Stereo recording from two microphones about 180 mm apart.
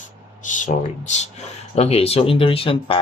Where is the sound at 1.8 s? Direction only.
35° left (ahead or behind).